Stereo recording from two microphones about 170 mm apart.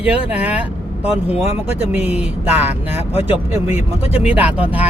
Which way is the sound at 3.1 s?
35° left (ahead or behind).